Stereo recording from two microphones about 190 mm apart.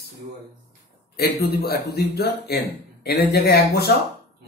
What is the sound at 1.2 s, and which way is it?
Speech, 55° left (ahead or behind).